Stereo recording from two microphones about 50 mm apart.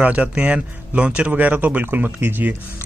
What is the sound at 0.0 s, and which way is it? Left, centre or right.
Speech, right.